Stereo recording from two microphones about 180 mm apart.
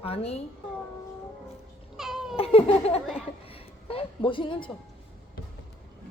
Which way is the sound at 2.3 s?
35° left (ahead or behind).